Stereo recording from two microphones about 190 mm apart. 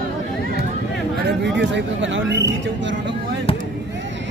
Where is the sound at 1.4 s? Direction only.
65° right (ahead or behind).